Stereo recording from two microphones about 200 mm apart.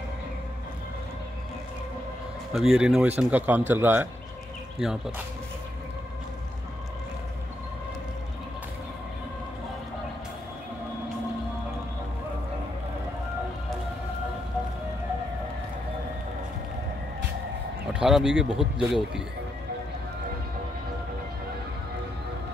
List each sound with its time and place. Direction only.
2.5 s speech: centre (ahead or behind)
17.9 s speech: 5° right (ahead or behind)